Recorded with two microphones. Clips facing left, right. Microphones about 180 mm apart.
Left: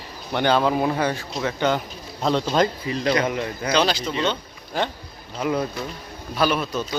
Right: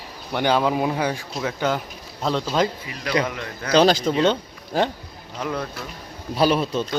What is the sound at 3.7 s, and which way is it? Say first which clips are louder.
Speech: right 6 dB; 45° right (ahead or behind).